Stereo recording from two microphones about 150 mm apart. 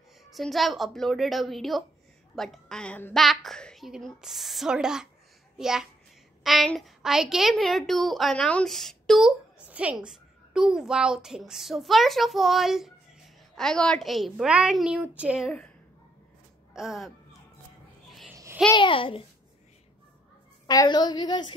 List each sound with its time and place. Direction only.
0.3 s a woman's voice: centre (ahead or behind)
9.7 s a woman's voice: 10° right (ahead or behind)
16.7 s a woman's voice: 5° right (ahead or behind)
18.7 s a child's voice: 35° left (ahead or behind)
20.6 s a woman's voice: 25° left (ahead or behind)